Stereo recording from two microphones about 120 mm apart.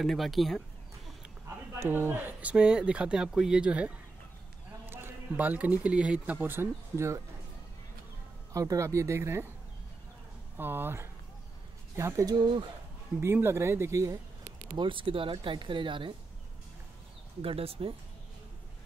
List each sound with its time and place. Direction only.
0.0 s speech: centre (ahead or behind)
1.7 s speech: 20° right (ahead or behind)
8.5 s speech: 25° right (ahead or behind)
10.6 s speech: 20° right (ahead or behind)
12.4 s speech: 45° right (ahead or behind)
13.2 s speech: 20° right (ahead or behind)
14.8 s speech: 45° right (ahead or behind)
17.4 s speech: 55° right (ahead or behind)